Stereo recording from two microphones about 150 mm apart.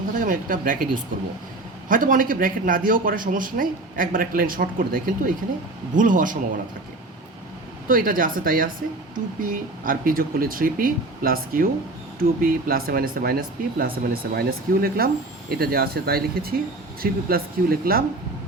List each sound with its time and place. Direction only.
0.2 s speech: 65° right (ahead or behind)
7.9 s speech: 70° right (ahead or behind); by 18.0 s 85° right